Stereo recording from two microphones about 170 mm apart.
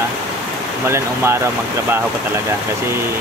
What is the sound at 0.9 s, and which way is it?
Speech, 15° right (ahead or behind).